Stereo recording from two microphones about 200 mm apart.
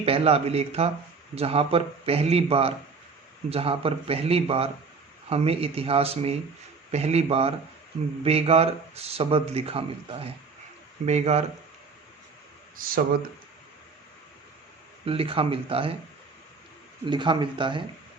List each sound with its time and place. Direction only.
0.0 s speech: 30° right (ahead or behind)
12.7 s speech: 45° right (ahead or behind)
15.0 s speech: 30° right (ahead or behind)
17.1 s speech: 25° right (ahead or behind)